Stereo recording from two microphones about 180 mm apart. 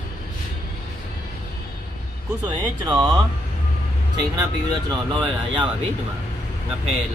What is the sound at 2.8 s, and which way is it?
Speech, 20° right (ahead or behind).